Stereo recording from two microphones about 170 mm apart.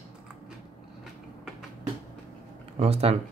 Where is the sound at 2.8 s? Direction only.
35° right (ahead or behind).